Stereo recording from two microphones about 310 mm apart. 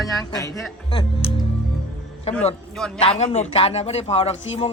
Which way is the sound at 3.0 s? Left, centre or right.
Centre.